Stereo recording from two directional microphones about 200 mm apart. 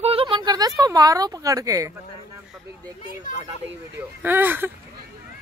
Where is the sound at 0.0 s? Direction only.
30° right (ahead or behind).